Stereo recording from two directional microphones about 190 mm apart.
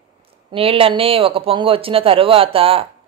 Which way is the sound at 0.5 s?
30° right (ahead or behind).